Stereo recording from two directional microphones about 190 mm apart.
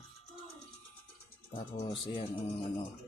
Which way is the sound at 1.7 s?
30° left (ahead or behind).